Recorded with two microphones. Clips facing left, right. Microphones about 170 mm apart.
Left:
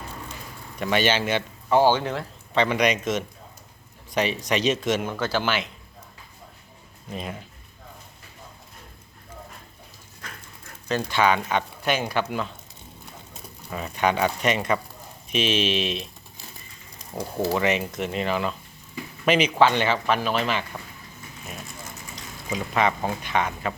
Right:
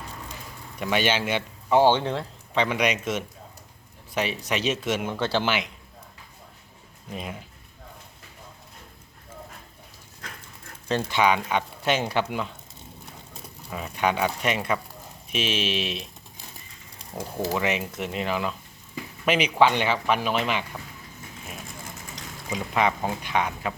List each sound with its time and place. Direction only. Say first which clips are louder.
0.8 s speech: left 2 dB; 10° right (ahead or behind)
1.8 s speech: right 1 dB; 25° right (ahead or behind)
2.6 s speech: left 2 dB; 5° right (ahead or behind)
5.2 s speech: even; 25° right (ahead or behind)
7.1 s speech: left 2 dB; 10° right (ahead or behind)
10.8 s speech: even; 30° right (ahead or behind)
11.2 s speech: left 1 dB; 10° right (ahead or behind)
11.8 s speech: even; 25° right (ahead or behind)
13.7 s speech: left 2 dB; 5° right (ahead or behind)
17.6 s speech: left 3 dB; 5° right (ahead or behind)
22.5 s speech: left 1 dB; 10° right (ahead or behind)